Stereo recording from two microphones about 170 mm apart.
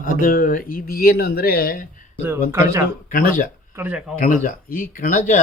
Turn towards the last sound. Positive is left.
turn(degrees=50)  # may be behind; listen again after turning